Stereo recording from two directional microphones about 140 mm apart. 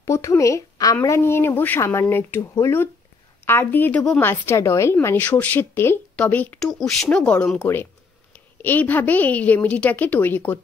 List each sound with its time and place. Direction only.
0.0 s a woman's voice: 20° left (ahead or behind)